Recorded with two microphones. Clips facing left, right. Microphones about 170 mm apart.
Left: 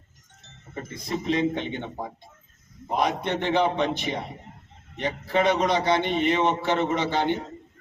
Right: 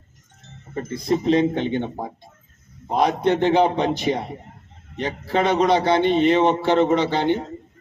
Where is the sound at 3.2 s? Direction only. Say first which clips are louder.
Right 6 dB; 45° right (ahead or behind).